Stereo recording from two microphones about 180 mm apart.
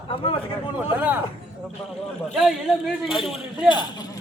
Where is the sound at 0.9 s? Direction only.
10° right (ahead or behind).